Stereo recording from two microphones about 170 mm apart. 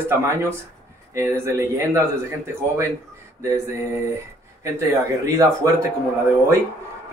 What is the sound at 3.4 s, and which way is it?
A man's voice, 15° right (ahead or behind).